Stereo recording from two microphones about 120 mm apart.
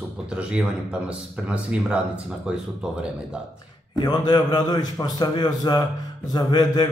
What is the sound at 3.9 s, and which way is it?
A man's voice, 35° left (ahead or behind).